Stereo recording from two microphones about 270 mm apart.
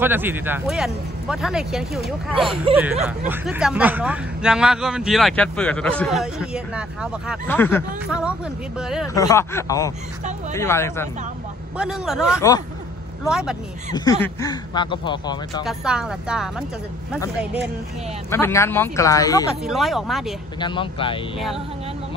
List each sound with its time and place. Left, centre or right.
0.0 s speech: centre
2.3 s speech: centre
3.1 s speech: centre
7.4 s speech: centre
8.1 s speech: centre
9.0 s speech: centre
11.8 s speech: centre
12.4 s speech: centre
13.2 s speech: centre
14.2 s speech: centre
15.6 s speech: centre
18.3 s speech: centre
19.6 s speech: centre
20.5 s speech: centre